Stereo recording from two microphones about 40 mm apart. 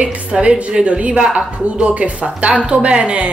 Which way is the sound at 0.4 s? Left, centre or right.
Right.